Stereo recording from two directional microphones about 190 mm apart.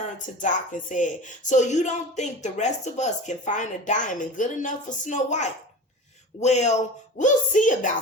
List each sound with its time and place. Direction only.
0.4 s speech: 40° left (ahead or behind)